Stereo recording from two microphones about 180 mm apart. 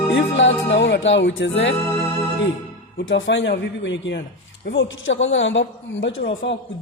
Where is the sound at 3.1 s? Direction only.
90° left.